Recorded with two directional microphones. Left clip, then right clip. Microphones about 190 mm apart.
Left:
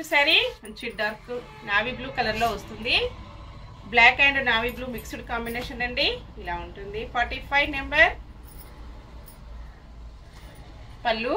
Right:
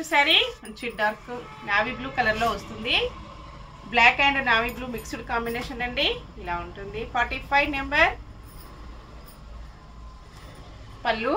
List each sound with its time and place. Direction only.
0.1 s a woman's voice: 15° right (ahead or behind)
1.7 s a woman's voice: 5° right (ahead or behind)
5.1 s a woman's voice: 10° right (ahead or behind)
11.0 s speech: 10° right (ahead or behind)